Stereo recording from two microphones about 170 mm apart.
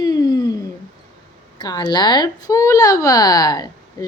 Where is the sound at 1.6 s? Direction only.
25° left (ahead or behind).